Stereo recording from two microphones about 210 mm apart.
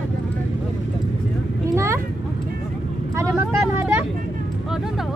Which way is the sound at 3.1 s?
15° right (ahead or behind).